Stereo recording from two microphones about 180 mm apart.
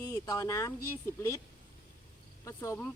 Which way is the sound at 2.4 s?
15° left (ahead or behind).